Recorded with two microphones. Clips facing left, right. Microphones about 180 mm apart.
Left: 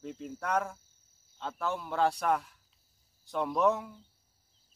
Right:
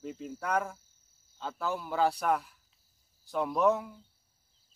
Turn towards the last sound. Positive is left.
turn(degrees=0)  # may be behind; listen again after turning